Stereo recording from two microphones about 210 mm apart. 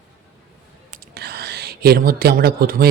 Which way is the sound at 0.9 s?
50° right (ahead or behind).